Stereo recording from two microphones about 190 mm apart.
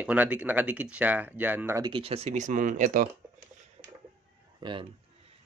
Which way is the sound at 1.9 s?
30° right (ahead or behind).